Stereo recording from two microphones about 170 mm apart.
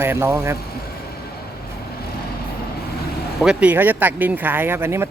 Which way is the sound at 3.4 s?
5° right (ahead or behind).